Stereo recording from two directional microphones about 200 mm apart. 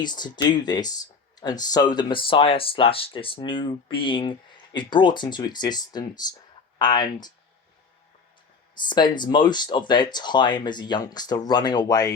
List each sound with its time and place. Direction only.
0.0 s speech: 20° left (ahead or behind)
8.9 s speech: 20° left (ahead or behind)